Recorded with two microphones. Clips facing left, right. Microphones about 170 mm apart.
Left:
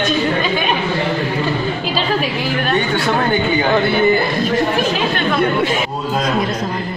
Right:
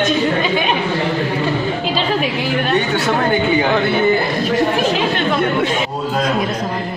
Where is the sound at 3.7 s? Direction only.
Centre (ahead or behind).